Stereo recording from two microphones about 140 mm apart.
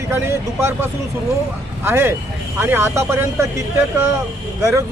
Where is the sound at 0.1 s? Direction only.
20° right (ahead or behind).